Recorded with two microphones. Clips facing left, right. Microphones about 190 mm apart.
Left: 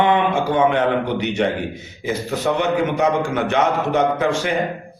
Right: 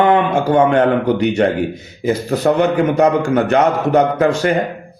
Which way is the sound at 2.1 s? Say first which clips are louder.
Right 6 dB; 40° right (ahead or behind).